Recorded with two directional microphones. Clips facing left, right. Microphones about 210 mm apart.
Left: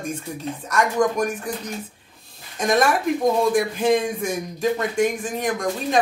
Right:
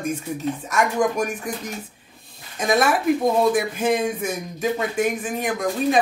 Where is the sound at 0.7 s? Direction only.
5° right (ahead or behind).